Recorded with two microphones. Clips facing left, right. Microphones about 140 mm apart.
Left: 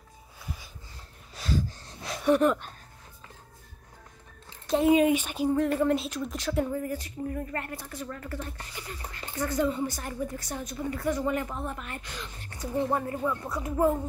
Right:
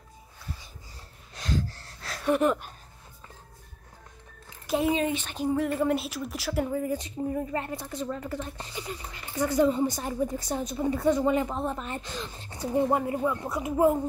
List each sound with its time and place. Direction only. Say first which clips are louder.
1.3 s a sound: even; 5° left (ahead or behind)
1.7 s a sound: left 3 dB; 15° left (ahead or behind)
2.3 s speech: even; 5° right (ahead or behind)
4.6 s speech: left 3 dB; 5° right (ahead or behind)
4.9 s speech: left 6 dB; 10° left (ahead or behind)
5.5 s speech: left 1 dB; 5° right (ahead or behind)
6.8 s a woman's voice: right 3 dB; 20° right (ahead or behind)
12.7 s speech: right 3 dB; 15° right (ahead or behind)